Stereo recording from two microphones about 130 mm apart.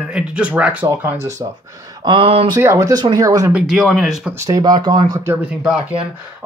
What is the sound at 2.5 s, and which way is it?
Speech, 20° right (ahead or behind).